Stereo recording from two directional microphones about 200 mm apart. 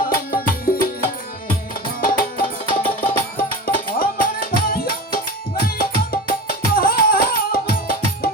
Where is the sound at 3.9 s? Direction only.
45° left (ahead or behind).